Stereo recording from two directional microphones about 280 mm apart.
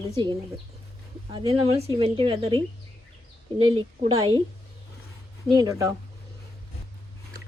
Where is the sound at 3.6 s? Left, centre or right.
Centre.